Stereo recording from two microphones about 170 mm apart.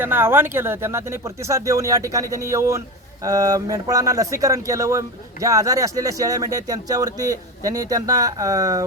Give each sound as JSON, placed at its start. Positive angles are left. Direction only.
{"t": 0.0, "sound": "speech", "side_deg": -10}